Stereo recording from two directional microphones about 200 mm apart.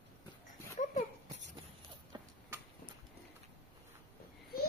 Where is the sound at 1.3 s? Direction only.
60° right (ahead or behind).